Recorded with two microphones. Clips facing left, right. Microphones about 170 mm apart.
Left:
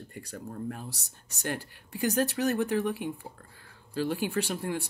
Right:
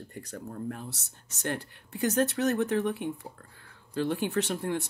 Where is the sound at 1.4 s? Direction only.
5° left (ahead or behind).